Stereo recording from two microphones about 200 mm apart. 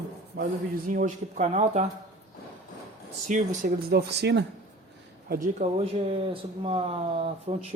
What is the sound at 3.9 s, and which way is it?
Speech, 55° right (ahead or behind).